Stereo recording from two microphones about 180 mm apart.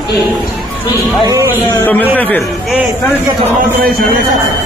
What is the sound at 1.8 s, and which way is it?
Speech, 10° left (ahead or behind).